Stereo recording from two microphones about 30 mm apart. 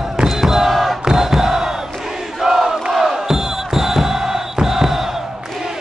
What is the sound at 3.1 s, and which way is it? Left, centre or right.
Music, centre.